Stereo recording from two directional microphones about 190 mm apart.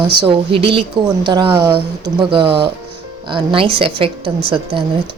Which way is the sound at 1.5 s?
15° right (ahead or behind).